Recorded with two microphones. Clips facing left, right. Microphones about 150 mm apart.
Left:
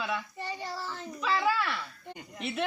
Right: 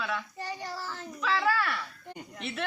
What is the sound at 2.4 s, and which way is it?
Speech, centre (ahead or behind).